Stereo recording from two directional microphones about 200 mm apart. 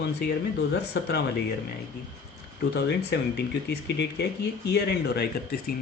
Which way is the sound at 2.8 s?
60° left (ahead or behind).